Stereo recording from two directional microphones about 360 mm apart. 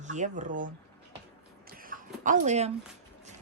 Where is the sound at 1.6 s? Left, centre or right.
Right.